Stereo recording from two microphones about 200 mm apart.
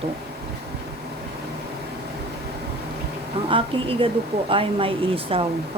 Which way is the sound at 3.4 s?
25° right (ahead or behind).